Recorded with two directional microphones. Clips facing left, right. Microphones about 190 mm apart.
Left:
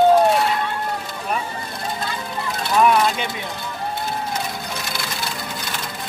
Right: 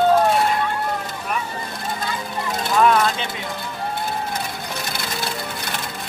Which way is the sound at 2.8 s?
10° left (ahead or behind).